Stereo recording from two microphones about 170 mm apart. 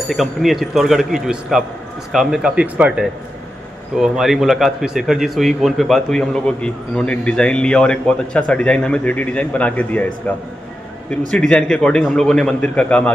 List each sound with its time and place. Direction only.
0.1 s a man's voice: centre (ahead or behind)